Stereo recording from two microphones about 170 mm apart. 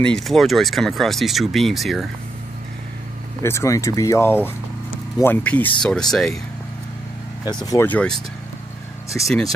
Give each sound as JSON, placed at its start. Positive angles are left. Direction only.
{"t": 0.0, "sound": "speech", "side_deg": 0}
{"t": 3.4, "sound": "speech", "side_deg": 15}
{"t": 7.4, "sound": "speech", "side_deg": 20}